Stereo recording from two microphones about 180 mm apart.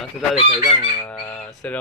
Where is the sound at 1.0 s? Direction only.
5° left (ahead or behind).